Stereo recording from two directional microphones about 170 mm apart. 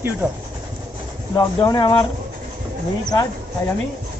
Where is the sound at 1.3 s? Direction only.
25° left (ahead or behind).